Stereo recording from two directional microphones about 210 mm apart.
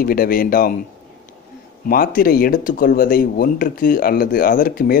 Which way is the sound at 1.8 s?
45° left (ahead or behind).